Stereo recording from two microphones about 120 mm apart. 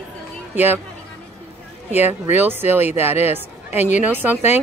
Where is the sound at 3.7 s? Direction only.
80° left.